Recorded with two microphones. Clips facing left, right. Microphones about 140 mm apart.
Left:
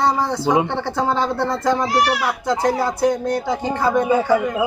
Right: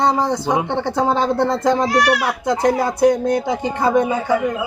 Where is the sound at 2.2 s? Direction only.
15° right (ahead or behind).